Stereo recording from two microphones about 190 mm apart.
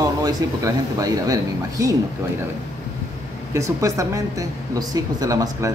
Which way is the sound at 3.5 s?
15° right (ahead or behind).